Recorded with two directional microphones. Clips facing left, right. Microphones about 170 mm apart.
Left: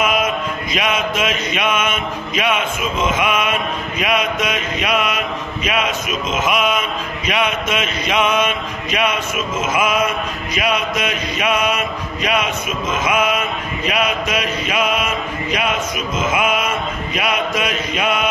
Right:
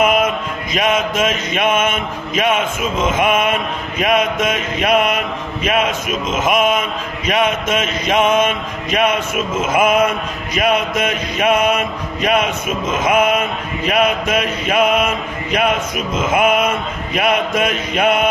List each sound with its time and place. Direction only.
0.7 s mantra: 45° right (ahead or behind)
16.3 s mantra: 55° right (ahead or behind)